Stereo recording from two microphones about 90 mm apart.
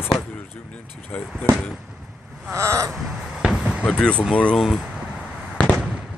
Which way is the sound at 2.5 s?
35° right (ahead or behind).